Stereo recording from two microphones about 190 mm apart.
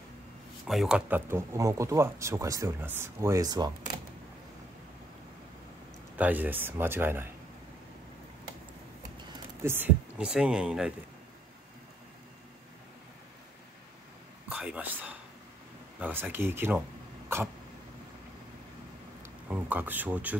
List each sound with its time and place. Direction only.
0.7 s speech: centre (ahead or behind); by 3.7 s 20° right (ahead or behind)
6.1 s speech: 10° right (ahead or behind)
9.6 s speech: 10° right (ahead or behind)
14.5 s whispering: 5° right (ahead or behind)
16.0 s speech: 10° right (ahead or behind)
19.4 s speech: 10° right (ahead or behind)